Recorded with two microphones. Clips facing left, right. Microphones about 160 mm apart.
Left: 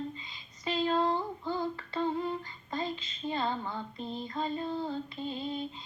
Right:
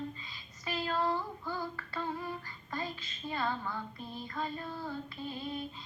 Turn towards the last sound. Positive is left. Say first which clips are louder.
# left 4 dB
turn(degrees=25)  # may be behind; listen again after turning